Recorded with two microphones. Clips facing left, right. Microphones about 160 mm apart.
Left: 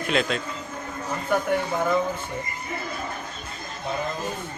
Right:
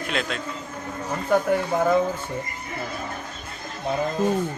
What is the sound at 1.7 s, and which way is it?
Speech, 35° right (ahead or behind).